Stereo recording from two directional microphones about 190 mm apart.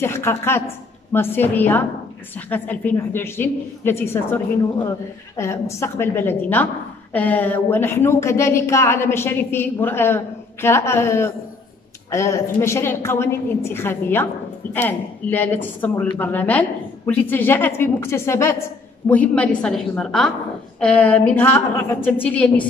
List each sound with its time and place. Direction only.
0.0 s a woman's voice: 15° left (ahead or behind)